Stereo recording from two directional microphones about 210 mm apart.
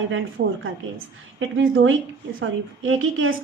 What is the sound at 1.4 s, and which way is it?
A woman's voice, 70° right (ahead or behind).